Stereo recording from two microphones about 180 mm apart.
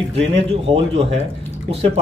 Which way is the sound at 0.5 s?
35° right (ahead or behind).